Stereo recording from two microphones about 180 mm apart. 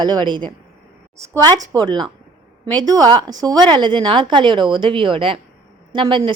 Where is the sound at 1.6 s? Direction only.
20° right (ahead or behind).